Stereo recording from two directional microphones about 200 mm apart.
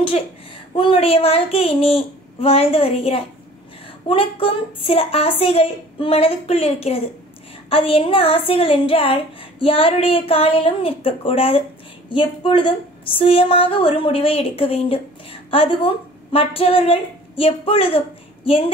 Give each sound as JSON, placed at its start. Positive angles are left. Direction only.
{"t": 0.7, "sound": "a woman's voice", "side_deg": 30}